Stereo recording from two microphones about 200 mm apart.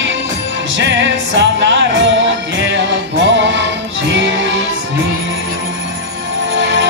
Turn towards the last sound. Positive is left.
turn(degrees=-70)  # may be behind; listen again after turning